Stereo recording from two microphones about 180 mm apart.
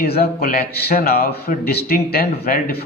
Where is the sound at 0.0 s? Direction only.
55° left (ahead or behind).